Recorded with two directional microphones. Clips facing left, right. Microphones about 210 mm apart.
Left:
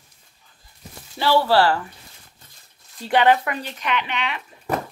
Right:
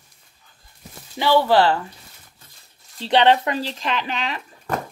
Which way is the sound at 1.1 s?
15° right (ahead or behind).